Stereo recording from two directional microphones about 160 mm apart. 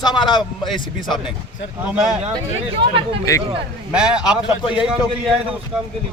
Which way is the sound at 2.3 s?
30° right (ahead or behind).